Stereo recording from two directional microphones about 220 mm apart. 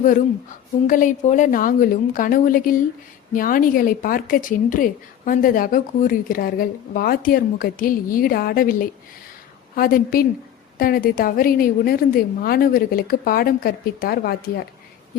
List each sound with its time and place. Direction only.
0.9 s a woman's voice: 35° left (ahead or behind)